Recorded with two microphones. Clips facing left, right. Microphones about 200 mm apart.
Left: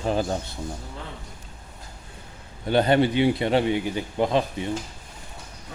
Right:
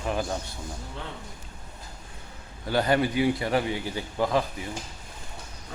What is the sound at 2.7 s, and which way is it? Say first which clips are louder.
A man's voice: left 4 dB; 25° left (ahead or behind).